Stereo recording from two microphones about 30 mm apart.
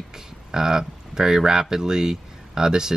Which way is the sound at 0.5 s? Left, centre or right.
Centre.